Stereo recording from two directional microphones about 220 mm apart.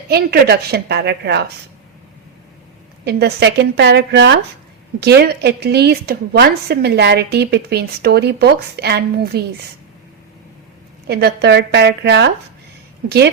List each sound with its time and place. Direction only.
0.1 s a woman's voice: 45° right (ahead or behind)
3.0 s a woman's voice: 45° right (ahead or behind)
11.1 s a woman's voice: 45° right (ahead or behind)